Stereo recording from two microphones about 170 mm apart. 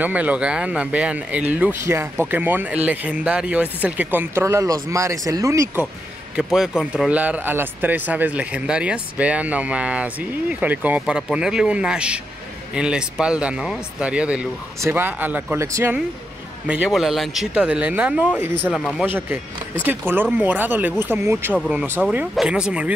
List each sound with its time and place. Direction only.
0.0 s a man's voice: 10° right (ahead or behind)
6.3 s a man's voice: centre (ahead or behind)
18.7 s speech: centre (ahead or behind)
19.0 s a man's voice: 10° right (ahead or behind)
21.5 s a man's voice: 5° right (ahead or behind)